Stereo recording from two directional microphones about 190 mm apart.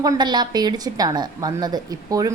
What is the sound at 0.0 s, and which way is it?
A woman's voice, 20° right (ahead or behind).